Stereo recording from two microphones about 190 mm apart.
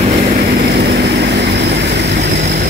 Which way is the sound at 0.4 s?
60° right (ahead or behind).